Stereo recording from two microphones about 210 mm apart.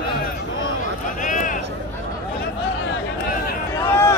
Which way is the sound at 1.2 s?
35° left (ahead or behind).